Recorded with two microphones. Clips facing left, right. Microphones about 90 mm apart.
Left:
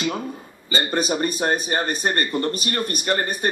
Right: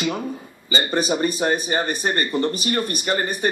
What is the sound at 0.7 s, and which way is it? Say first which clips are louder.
Speech: right 1 dB; 15° right (ahead or behind).